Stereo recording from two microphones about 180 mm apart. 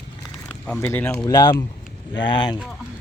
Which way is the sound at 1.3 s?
20° left (ahead or behind).